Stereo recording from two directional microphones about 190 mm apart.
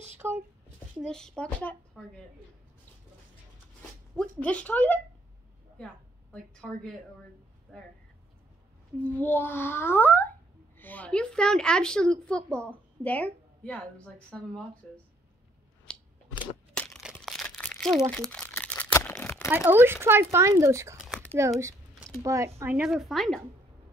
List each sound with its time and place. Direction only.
0.2 s a sound: 15° right (ahead or behind)
0.9 s a woman's voice: 5° left (ahead or behind)
4.2 s a child's voice: 5° left (ahead or behind)
8.9 s a child's voice: 10° left (ahead or behind)
15.9 s a sound: 5° left (ahead or behind)
16.7 s crumpling: 5° left (ahead or behind)
19.5 s a woman's voice: 10° right (ahead or behind)